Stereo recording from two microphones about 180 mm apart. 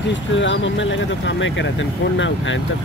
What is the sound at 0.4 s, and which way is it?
Speech, 90° left.